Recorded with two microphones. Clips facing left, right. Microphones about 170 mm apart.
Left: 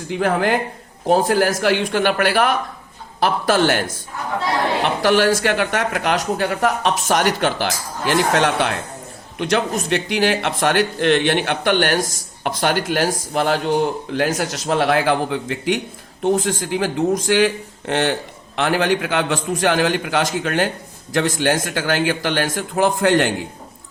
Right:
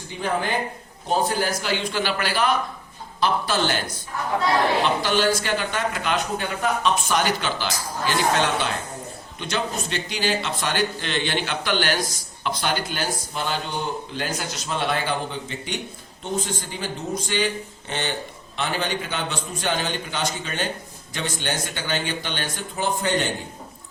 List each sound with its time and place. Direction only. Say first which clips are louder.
1.0 s speech: left 7 dB; 80° left; by 2.6 s 55° left (ahead or behind)
3.2 s speech: left 5 dB; 90° left
3.7 s speech: left 7 dB; 55° left (ahead or behind)
5.0 s speech: left 6 dB; 65° left (ahead or behind); by 12.7 s 50° left (ahead or behind)
12.8 s speech: left 8 dB; 90° left; by 14.3 s 70° left (ahead or behind)
14.4 s speech: left 8 dB; 90° left
20.4 s speech: left 9 dB; 80° left
21.1 s speech: left 10 dB; 90° left